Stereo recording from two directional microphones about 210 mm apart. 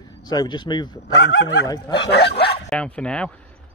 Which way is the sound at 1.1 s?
55° left (ahead or behind).